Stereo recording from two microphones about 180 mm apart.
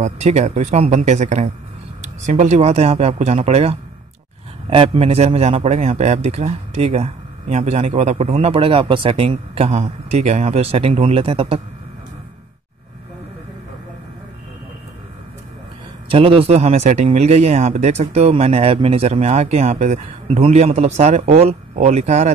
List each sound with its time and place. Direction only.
0.0 s a man's voice: 40° right (ahead or behind)
16.1 s a man's voice: 30° right (ahead or behind)